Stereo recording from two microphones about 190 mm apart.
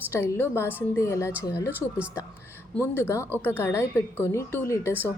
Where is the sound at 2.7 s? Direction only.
15° left (ahead or behind).